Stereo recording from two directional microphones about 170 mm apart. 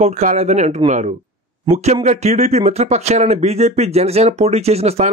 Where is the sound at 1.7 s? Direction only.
40° right (ahead or behind).